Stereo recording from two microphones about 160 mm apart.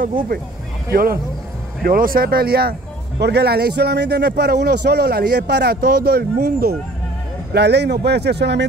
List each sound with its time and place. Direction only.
0.0 s speech: 60° right (ahead or behind)
3.2 s speech: 90° right; by 6.7 s 70° right (ahead or behind)
7.5 s speech: 90° right